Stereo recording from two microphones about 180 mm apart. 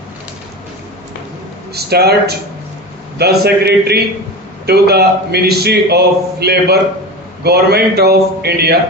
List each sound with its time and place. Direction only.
1.7 s speech: 60° right (ahead or behind)